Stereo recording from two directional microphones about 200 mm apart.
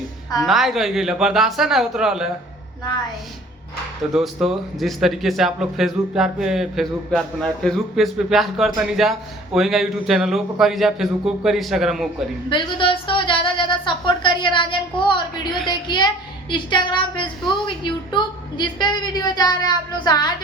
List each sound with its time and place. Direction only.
0.4 s speech: centre (ahead or behind)
4.1 s speech: centre (ahead or behind)
12.5 s a woman's voice: 25° left (ahead or behind)